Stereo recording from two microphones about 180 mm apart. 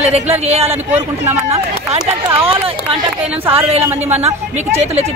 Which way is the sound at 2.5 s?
30° right (ahead or behind).